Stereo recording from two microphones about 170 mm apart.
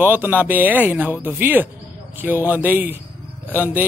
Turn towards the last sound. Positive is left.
turn(degrees=-10)  # may be behind; listen again after turning